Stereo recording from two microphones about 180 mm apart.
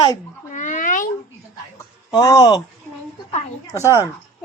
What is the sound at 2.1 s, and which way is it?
Speech, 20° left (ahead or behind).